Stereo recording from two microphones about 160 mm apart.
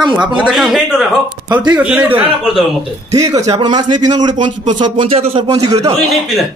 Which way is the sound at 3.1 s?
20° right (ahead or behind).